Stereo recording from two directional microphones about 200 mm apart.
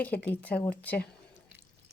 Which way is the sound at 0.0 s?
5° left (ahead or behind).